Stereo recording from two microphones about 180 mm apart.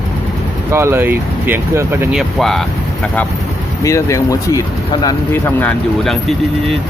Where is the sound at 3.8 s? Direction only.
15° left (ahead or behind); by 6.7 s centre (ahead or behind).